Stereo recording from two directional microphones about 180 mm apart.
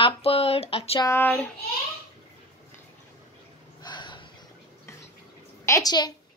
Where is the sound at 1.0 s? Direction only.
10° left (ahead or behind).